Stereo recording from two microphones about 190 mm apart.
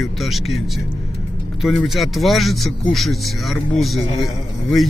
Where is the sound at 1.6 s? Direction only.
Centre (ahead or behind).